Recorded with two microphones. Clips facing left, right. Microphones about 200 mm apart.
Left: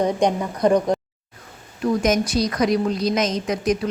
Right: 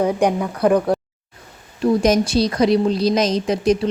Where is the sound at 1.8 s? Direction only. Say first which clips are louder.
Right 4 dB; 30° right (ahead or behind).